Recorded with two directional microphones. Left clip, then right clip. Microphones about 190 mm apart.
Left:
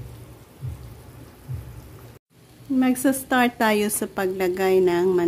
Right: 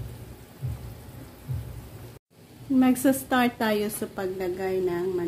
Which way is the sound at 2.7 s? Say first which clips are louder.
Left 1 dB; 20° left (ahead or behind).